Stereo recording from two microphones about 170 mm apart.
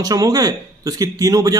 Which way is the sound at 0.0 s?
20° right (ahead or behind).